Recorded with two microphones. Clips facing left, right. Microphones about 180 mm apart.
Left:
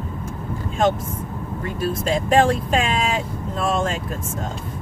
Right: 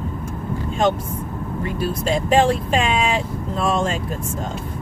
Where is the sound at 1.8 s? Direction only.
Centre (ahead or behind).